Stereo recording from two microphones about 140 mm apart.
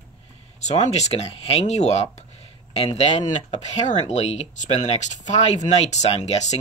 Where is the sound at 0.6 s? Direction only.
55° left (ahead or behind).